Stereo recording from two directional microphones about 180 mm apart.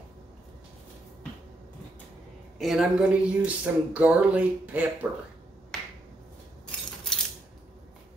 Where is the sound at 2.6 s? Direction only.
5° right (ahead or behind).